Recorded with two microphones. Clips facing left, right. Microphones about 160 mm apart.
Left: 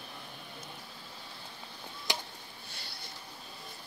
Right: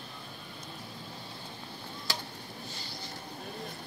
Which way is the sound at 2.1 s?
20° left (ahead or behind).